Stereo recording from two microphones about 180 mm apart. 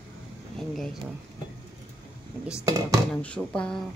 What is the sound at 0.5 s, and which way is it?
Speech, centre (ahead or behind).